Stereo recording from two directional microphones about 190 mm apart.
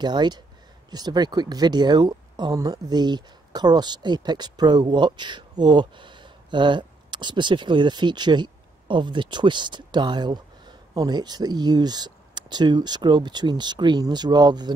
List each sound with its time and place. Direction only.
0.0 s speech: 20° right (ahead or behind)